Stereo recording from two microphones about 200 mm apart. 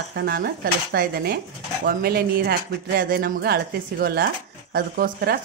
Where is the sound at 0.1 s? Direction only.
50° right (ahead or behind).